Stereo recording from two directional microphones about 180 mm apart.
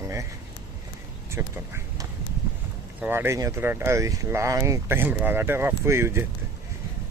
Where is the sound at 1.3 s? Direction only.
15° right (ahead or behind).